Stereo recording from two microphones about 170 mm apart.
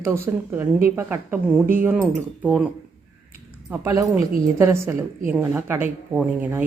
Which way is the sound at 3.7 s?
20° right (ahead or behind).